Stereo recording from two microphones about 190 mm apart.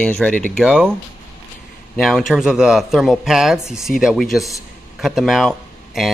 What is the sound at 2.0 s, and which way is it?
Speech, centre (ahead or behind).